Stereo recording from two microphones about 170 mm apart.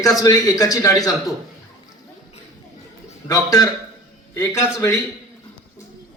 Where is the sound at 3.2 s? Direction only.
20° left (ahead or behind).